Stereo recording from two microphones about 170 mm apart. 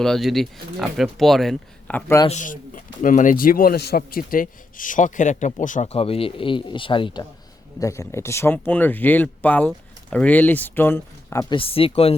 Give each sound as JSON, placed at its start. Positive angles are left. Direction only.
{"t": 0.0, "sound": "speech", "side_deg": 0}
{"t": 2.2, "sound": "speech", "side_deg": 45}
{"t": 11.5, "sound": "speech", "side_deg": 35}